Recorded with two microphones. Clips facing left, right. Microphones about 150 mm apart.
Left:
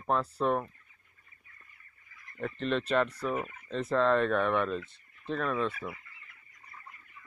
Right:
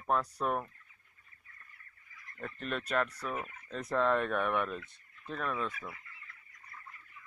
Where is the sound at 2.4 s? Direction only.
10° right (ahead or behind).